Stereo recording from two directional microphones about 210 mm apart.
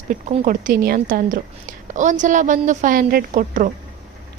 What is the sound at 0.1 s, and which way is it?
A woman's voice, 40° right (ahead or behind).